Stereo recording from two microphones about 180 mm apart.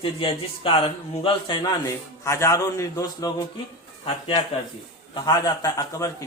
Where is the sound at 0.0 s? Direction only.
30° left (ahead or behind).